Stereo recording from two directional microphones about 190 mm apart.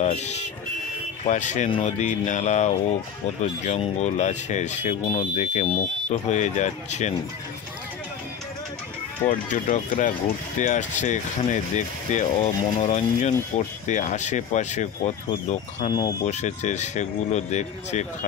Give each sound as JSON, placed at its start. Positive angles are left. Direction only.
{"t": 0.0, "sound": "speech", "side_deg": 35}
{"t": 9.3, "sound": "speech", "side_deg": 45}
{"t": 15.9, "sound": "speech", "side_deg": 20}
{"t": 16.3, "sound": "speech", "side_deg": 40}